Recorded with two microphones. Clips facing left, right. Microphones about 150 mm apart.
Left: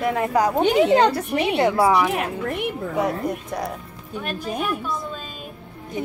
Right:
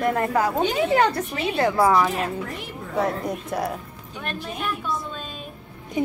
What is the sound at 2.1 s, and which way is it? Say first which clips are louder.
Speech: left 3 dB; 60° left (ahead or behind).